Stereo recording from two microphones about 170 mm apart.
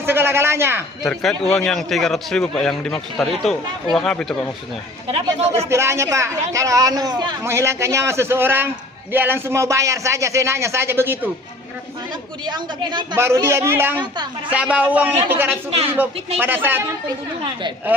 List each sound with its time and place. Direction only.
0.0 s a sound: 15° right (ahead or behind)
1.0 s a man's voice: centre (ahead or behind)
5.0 s speech: 35° right (ahead or behind)
5.5 s speech: 15° right (ahead or behind)
12.5 s speech: 25° right (ahead or behind)
13.1 s speech: 15° right (ahead or behind)